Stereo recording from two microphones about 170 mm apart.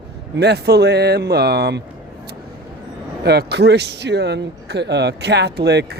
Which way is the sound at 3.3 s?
75° right (ahead or behind).